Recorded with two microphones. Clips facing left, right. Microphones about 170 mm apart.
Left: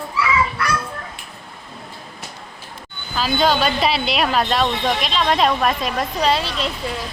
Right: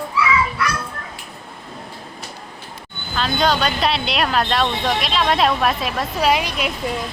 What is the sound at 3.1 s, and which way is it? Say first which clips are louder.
Speech: left 1 dB; centre (ahead or behind).